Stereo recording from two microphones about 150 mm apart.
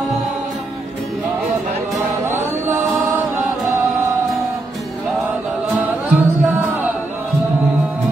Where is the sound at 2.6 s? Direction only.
15° right (ahead or behind).